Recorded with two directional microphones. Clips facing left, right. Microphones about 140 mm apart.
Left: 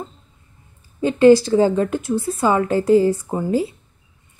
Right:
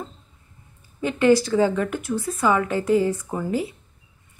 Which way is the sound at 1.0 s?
30° left (ahead or behind).